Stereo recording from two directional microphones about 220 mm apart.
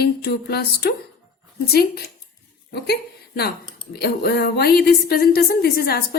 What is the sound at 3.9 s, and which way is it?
Speech, 45° left (ahead or behind).